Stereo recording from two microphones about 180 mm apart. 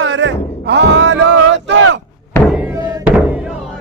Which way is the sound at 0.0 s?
90° right.